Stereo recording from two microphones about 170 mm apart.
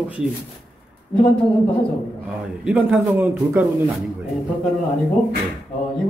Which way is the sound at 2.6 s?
5° right (ahead or behind).